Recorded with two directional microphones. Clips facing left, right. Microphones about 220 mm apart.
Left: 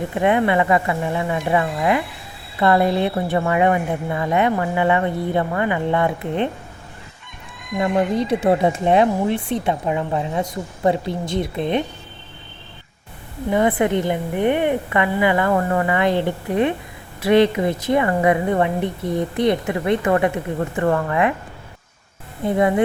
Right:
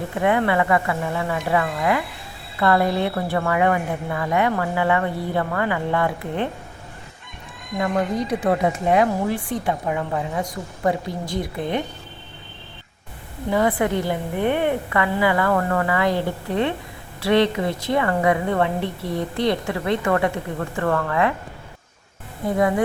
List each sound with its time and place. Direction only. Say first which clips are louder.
0.1 s speech: left 2 dB; 20° left (ahead or behind)
7.8 s speech: left 3 dB; 25° left (ahead or behind)
13.5 s speech: left 2 dB; 20° left (ahead or behind)
22.4 s speech: left 2 dB; 25° left (ahead or behind)